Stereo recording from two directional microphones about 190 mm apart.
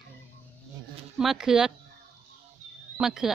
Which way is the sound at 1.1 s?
Centre (ahead or behind).